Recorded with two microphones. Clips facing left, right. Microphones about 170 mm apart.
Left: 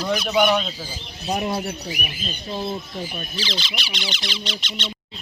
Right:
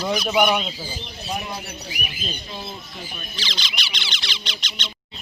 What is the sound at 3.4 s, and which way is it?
Speech, 5° left (ahead or behind).